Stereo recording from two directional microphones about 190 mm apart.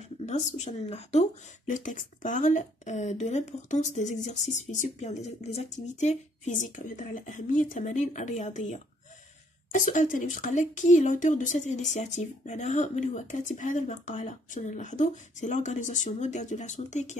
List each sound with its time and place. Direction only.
0.3 s a woman's voice: 35° left (ahead or behind)